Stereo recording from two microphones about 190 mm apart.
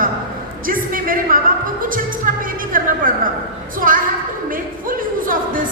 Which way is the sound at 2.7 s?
45° right (ahead or behind).